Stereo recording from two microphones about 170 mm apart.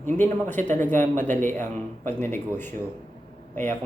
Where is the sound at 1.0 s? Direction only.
45° right (ahead or behind).